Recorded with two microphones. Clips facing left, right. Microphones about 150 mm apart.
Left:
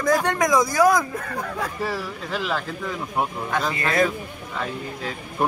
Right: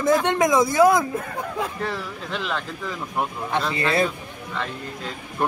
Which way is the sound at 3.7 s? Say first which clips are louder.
Right 1 dB; 30° right (ahead or behind).